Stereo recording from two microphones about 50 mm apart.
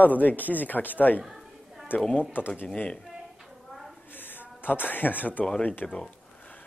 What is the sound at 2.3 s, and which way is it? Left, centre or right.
Speech, left.